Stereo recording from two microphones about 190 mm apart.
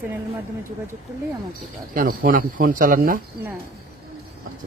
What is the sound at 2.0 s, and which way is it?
Speech, 45° right (ahead or behind).